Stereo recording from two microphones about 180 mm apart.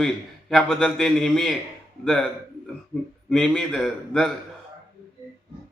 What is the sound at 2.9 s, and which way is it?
A man's voice, 5° left (ahead or behind).